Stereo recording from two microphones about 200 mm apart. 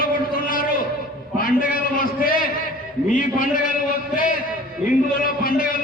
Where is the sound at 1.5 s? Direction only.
45° left (ahead or behind).